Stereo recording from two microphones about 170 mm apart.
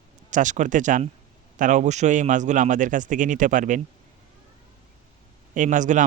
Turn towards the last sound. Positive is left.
turn(degrees=-45)  # may be behind; listen again after turning